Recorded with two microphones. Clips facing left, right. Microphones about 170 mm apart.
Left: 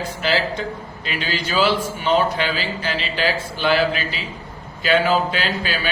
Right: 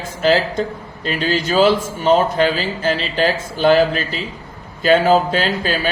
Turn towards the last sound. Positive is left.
turn(degrees=-40)  # may be behind; listen again after turning